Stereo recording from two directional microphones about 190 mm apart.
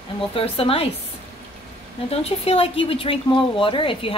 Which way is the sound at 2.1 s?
30° left (ahead or behind).